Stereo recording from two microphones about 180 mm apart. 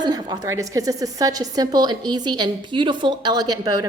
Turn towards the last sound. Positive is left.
turn(degrees=-20)  # may be behind; listen again after turning